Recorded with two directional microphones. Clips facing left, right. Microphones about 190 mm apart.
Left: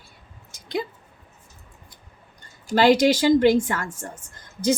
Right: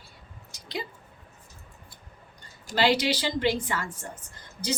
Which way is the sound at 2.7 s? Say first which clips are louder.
Left 7 dB; 50° left (ahead or behind).